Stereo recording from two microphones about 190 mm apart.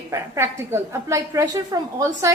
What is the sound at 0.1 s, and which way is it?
A woman's voice, 15° right (ahead or behind).